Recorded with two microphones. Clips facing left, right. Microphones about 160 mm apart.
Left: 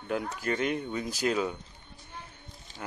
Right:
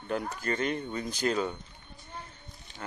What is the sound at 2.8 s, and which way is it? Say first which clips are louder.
Speech: left 1 dB; 10° left (ahead or behind).